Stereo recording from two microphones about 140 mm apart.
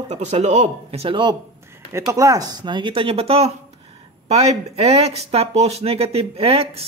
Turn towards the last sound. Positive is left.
turn(degrees=-45)  # may be behind; listen again after turning